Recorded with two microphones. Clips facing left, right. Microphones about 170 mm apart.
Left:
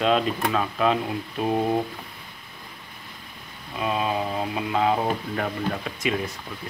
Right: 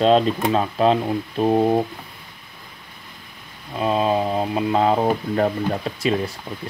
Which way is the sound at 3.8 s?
30° right (ahead or behind).